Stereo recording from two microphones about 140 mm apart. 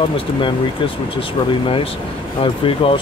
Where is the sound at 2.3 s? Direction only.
40° left (ahead or behind).